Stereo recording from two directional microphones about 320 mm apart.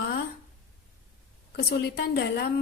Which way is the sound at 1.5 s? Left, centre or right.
Left.